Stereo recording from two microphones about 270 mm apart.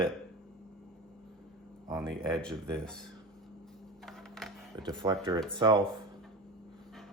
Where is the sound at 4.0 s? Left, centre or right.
Centre.